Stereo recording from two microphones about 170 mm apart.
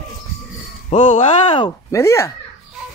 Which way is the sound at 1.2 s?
30° left (ahead or behind).